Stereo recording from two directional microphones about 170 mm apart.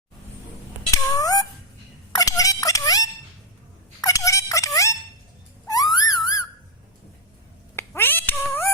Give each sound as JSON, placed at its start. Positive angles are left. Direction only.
{"t": 0.9, "sound": "cat", "side_deg": 20}
{"t": 2.1, "sound": "fowl", "side_deg": 20}
{"t": 4.0, "sound": "music", "side_deg": 20}
{"t": 5.6, "sound": "a sound", "side_deg": 20}
{"t": 7.8, "sound": "cat", "side_deg": 15}